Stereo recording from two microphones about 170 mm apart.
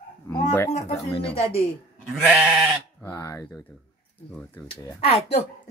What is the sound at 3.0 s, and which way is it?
Speech, 15° left (ahead or behind).